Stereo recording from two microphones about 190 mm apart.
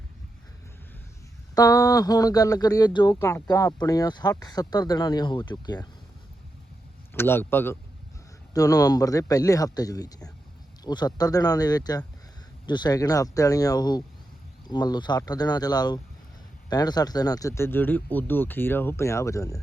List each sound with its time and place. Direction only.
1.5 s speech: 20° left (ahead or behind)
7.1 s speech: 10° left (ahead or behind)